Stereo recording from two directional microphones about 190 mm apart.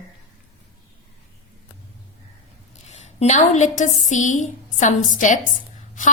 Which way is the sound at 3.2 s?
35° left (ahead or behind).